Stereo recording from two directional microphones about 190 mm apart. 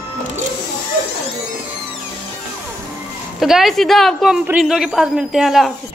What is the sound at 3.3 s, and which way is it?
A woman's voice, centre (ahead or behind).